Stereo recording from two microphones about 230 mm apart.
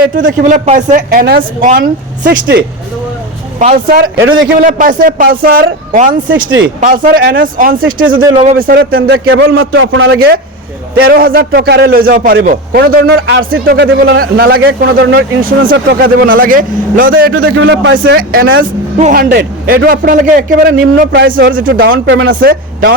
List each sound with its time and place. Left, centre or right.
0.2 s a man's voice: right
4.2 s a man's voice: right
4.6 s a man's voice: right
6.2 s a man's voice: right
6.7 s a man's voice: right
9.1 s a man's voice: right
17.3 s a man's voice: right
17.9 s a man's voice: right